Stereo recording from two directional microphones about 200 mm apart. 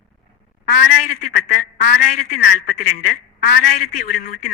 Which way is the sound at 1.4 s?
40° left (ahead or behind).